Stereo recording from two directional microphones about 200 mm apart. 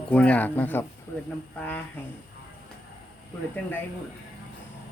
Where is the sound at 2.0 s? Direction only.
10° left (ahead or behind).